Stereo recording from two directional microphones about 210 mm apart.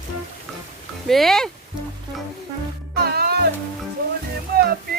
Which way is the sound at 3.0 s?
50° right (ahead or behind).